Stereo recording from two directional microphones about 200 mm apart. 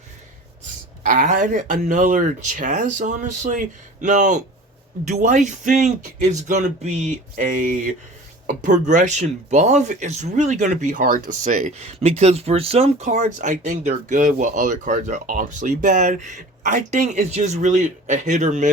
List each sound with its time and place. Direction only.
1.0 s speech: 45° right (ahead or behind)